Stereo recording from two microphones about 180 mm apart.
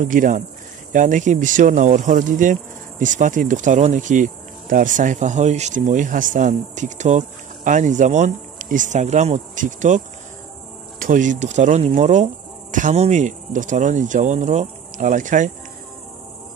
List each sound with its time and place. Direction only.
0.0 s speech: 45° right (ahead or behind)
11.0 s speech: 45° right (ahead or behind)